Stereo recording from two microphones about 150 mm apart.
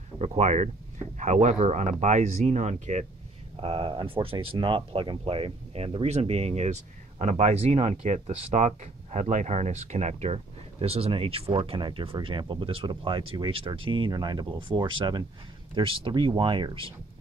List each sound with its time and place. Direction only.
0.2 s speech: 50° right (ahead or behind)
3.6 s speech: 35° right (ahead or behind)